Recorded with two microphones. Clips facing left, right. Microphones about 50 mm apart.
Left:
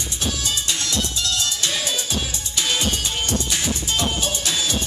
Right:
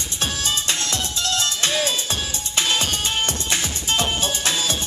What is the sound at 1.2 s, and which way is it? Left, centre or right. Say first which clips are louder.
Music: right 2 dB; right.